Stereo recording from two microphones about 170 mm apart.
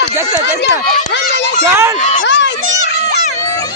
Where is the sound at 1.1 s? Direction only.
90° left.